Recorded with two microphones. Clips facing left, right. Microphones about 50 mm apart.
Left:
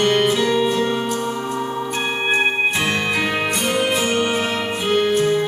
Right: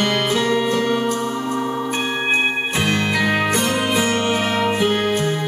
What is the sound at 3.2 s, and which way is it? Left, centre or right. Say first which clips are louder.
Music: right 2 dB; right.